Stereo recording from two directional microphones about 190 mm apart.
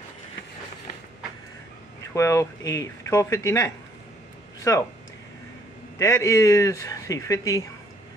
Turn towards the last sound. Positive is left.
turn(degrees=15)  # may be behind; listen again after turning